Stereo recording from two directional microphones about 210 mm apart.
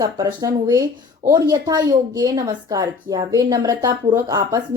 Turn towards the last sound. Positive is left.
turn(degrees=-15)  # may be behind; listen again after turning